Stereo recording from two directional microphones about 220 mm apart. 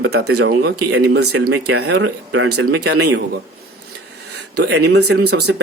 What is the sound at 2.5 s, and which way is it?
Speech, 90° right.